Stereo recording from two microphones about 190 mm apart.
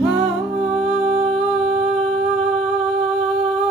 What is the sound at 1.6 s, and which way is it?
Humming, 35° right (ahead or behind).